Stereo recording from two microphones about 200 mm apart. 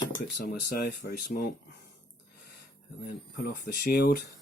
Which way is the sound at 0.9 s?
45° left (ahead or behind).